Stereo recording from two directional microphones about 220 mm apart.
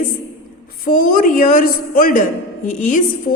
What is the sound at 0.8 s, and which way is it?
A woman's voice, 40° left (ahead or behind).